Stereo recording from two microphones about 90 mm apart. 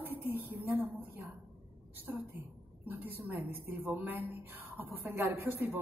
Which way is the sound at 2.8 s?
20° right (ahead or behind).